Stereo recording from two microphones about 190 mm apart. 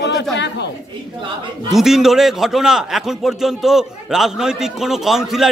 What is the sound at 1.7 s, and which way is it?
A man's voice, centre (ahead or behind).